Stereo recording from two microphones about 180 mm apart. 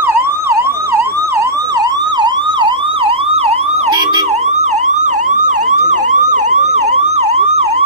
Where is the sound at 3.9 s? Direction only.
20° right (ahead or behind).